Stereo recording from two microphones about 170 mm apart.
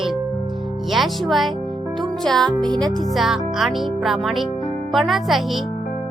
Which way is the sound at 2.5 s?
25° right (ahead or behind).